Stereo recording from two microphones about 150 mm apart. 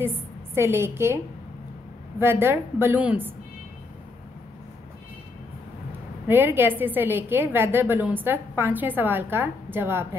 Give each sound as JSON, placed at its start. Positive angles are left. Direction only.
{"t": 0.6, "sound": "a woman's voice", "side_deg": -15}
{"t": 6.2, "sound": "a woman's voice", "side_deg": -15}